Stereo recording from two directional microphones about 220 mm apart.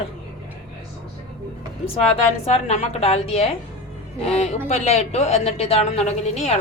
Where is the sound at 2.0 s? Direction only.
25° left (ahead or behind).